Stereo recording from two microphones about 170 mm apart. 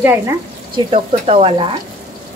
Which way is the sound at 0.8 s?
35° right (ahead or behind).